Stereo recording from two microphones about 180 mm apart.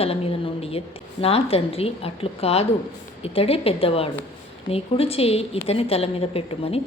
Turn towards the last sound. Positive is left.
turn(degrees=35)  # may be behind; listen again after turning